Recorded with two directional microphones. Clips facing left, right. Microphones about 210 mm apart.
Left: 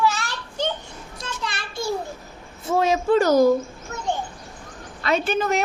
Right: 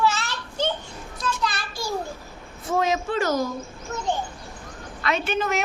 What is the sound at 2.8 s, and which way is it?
Speech, 35° left (ahead or behind).